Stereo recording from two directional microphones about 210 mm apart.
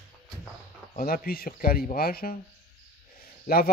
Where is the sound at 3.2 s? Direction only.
45° left (ahead or behind).